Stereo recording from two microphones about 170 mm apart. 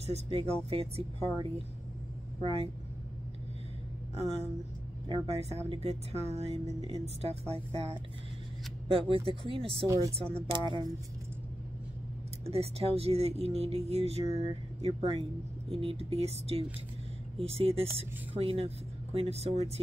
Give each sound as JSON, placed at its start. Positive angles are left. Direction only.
{"t": 0.0, "sound": "speech", "side_deg": -35}
{"t": 5.0, "sound": "speech", "side_deg": -35}
{"t": 8.8, "sound": "speech", "side_deg": -35}
{"t": 9.8, "sound": "speech", "side_deg": -20}
{"t": 10.4, "sound": "speech", "side_deg": -30}
{"t": 12.4, "sound": "speech", "side_deg": -35}